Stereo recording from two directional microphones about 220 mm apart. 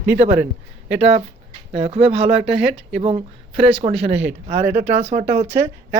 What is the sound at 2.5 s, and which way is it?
Speech, 5° right (ahead or behind).